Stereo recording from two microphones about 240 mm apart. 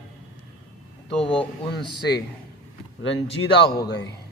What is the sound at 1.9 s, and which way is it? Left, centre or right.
A man's voice, left.